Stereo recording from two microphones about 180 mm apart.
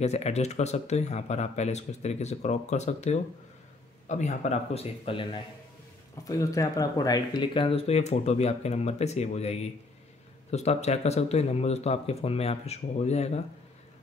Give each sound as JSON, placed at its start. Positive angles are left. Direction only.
{"t": 0.0, "sound": "speech", "side_deg": 35}
{"t": 6.2, "sound": "speech", "side_deg": 20}